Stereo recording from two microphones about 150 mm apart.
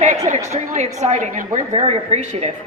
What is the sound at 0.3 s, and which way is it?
A woman's voice, 50° right (ahead or behind).